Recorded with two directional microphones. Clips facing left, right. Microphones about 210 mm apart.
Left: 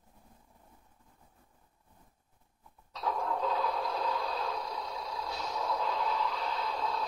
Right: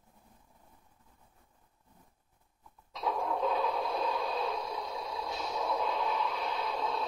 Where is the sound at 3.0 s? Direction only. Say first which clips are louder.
Right 1 dB; 20° right (ahead or behind).